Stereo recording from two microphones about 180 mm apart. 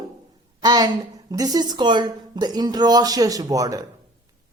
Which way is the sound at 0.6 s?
20° right (ahead or behind).